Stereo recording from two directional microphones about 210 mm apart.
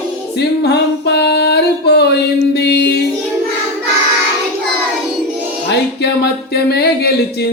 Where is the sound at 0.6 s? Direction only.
55° left (ahead or behind).